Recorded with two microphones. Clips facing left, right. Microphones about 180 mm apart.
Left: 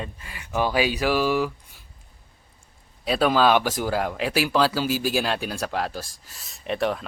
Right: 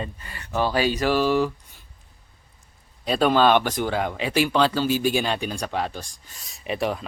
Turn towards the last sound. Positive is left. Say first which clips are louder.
# left 1 dB
turn(degrees=0)  # may be behind; listen again after turning